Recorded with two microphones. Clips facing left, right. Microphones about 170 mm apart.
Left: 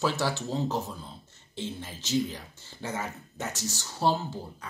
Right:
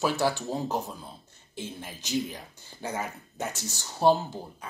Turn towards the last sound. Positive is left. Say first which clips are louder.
# even
turn(degrees=-15)  # may be behind; listen again after turning